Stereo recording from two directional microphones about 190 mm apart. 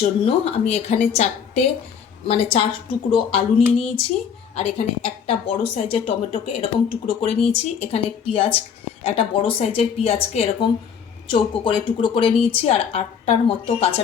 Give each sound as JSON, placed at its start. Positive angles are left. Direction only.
{"t": 0.0, "sound": "a woman's voice", "side_deg": 30}